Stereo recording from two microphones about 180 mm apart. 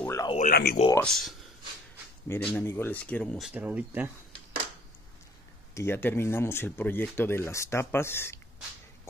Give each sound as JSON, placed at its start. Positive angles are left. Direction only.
{"t": 0.0, "sound": "a sound", "side_deg": 15}
{"t": 0.4, "sound": "speech", "side_deg": 60}
{"t": 0.9, "sound": "speech", "side_deg": 0}
{"t": 5.8, "sound": "speech", "side_deg": 10}